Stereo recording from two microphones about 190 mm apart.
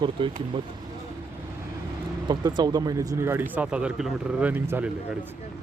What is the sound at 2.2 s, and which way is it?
Speech, 25° right (ahead or behind).